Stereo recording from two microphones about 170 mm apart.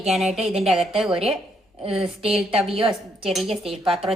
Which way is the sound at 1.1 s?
35° right (ahead or behind).